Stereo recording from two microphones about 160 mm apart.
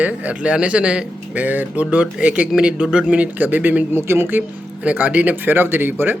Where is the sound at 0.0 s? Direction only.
10° right (ahead or behind).